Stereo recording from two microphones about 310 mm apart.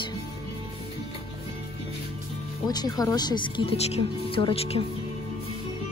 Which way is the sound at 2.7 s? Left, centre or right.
Centre.